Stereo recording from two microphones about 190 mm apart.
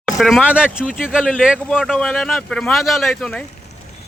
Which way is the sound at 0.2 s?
Centre (ahead or behind).